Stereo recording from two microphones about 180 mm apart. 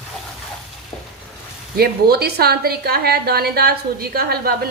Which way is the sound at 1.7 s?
60° right (ahead or behind).